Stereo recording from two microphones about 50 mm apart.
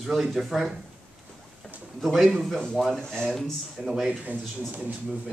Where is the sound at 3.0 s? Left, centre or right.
Centre.